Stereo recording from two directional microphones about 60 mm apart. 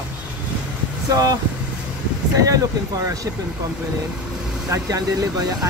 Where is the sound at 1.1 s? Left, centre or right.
Right.